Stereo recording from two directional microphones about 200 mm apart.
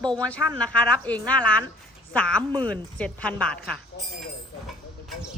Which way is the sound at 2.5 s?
25° right (ahead or behind).